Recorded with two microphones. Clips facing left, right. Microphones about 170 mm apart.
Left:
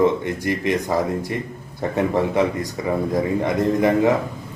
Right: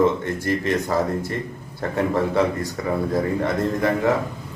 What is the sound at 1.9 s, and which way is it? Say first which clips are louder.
A man's voice: left 1 dB; 15° left (ahead or behind).